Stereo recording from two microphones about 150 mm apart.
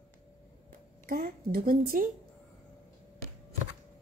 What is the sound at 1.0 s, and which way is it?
A woman's voice, 70° right (ahead or behind).